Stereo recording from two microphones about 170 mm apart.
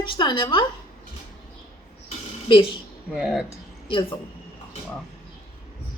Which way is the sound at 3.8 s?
30° left (ahead or behind).